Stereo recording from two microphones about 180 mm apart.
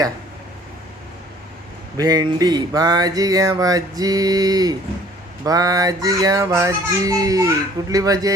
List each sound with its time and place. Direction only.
2.0 s music: 20° right (ahead or behind)